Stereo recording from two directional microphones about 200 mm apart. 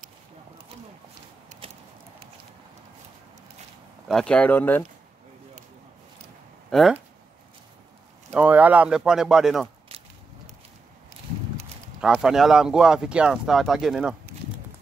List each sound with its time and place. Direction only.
1.5 s a sound: 40° right (ahead or behind)
4.1 s speech: 5° left (ahead or behind)
6.7 s speech: centre (ahead or behind)
8.3 s speech: 5° right (ahead or behind)
12.0 s speech: 5° right (ahead or behind)